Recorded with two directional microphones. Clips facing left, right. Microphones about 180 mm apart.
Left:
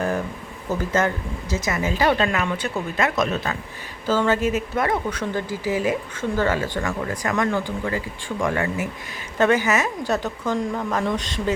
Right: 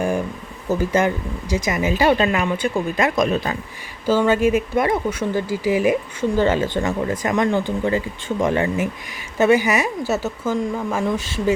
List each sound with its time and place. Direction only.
0.7 s speech: 10° right (ahead or behind)
9.4 s speech: 10° right (ahead or behind)